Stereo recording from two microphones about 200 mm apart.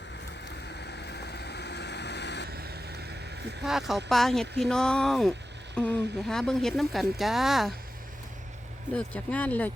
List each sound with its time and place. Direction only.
0.7 s vehicle: 55° left (ahead or behind)
2.5 s vehicle: 50° right (ahead or behind)
3.6 s speech: centre (ahead or behind)
8.9 s speech: 5° left (ahead or behind)